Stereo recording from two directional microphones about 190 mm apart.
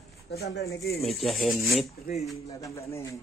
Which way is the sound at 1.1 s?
Centre (ahead or behind).